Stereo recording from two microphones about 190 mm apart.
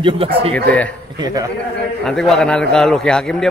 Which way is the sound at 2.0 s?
Centre (ahead or behind).